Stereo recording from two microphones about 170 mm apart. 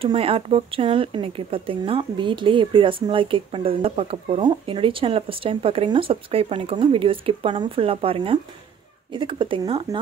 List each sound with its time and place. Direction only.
0.0 s speech: 35° right (ahead or behind)